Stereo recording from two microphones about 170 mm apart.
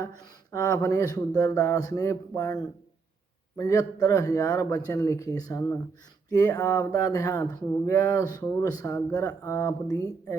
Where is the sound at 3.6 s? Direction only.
20° left (ahead or behind).